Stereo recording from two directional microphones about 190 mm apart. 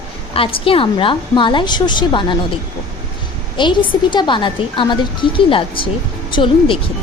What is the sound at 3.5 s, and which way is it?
A woman's voice, 25° left (ahead or behind).